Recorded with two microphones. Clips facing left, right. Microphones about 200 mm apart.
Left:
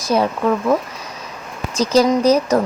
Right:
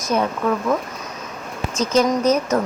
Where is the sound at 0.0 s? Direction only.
35° left (ahead or behind).